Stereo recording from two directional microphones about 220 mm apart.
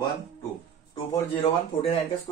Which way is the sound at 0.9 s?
25° left (ahead or behind).